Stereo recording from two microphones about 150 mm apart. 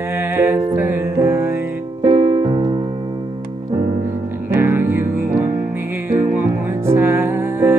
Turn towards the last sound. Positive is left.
turn(degrees=-15)  # may be behind; listen again after turning